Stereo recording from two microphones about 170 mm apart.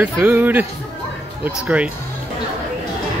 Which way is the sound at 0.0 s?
10° right (ahead or behind).